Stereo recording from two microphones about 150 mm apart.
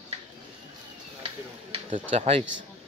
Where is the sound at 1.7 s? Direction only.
40° right (ahead or behind).